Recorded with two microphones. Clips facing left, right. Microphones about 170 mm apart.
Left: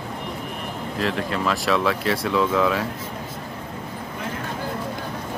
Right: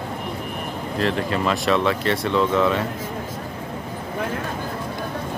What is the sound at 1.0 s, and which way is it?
Speech, centre (ahead or behind).